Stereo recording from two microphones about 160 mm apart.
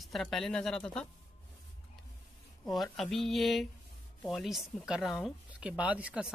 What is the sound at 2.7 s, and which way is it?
Speech, centre (ahead or behind).